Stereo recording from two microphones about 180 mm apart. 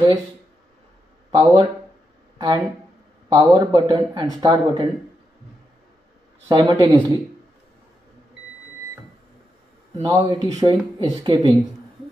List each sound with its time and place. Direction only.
1.3 s speech: 20° right (ahead or behind)
6.5 s speech: 25° right (ahead or behind)
10.0 s speech: 20° right (ahead or behind)